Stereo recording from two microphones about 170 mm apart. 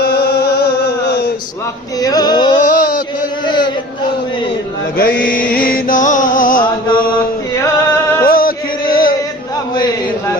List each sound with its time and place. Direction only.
0.0 s music: 70° left (ahead or behind)
1.0 s mantra: 70° left (ahead or behind)
2.0 s music: 20° left (ahead or behind)
2.6 s a sound: 55° left (ahead or behind)
4.9 s mantra: 60° left (ahead or behind)
5.5 s music: 55° left (ahead or behind)
8.2 s music: 55° left (ahead or behind)